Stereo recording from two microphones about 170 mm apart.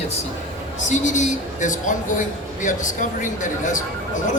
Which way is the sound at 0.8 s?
45° left (ahead or behind).